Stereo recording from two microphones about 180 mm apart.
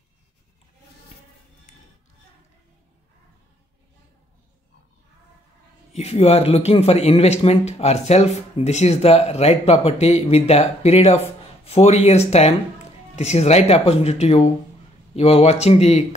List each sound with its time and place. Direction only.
5.9 s speech: 35° left (ahead or behind)